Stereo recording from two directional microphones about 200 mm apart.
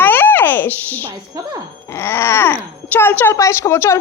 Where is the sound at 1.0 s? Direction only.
15° right (ahead or behind).